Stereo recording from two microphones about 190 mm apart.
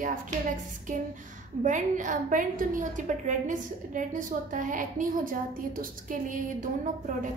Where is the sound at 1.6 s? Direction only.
40° right (ahead or behind).